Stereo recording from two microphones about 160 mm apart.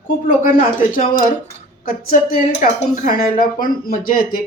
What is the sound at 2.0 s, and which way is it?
Speech, 65° left (ahead or behind).